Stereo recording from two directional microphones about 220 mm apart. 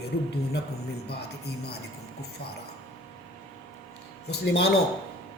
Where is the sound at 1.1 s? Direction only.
45° left (ahead or behind).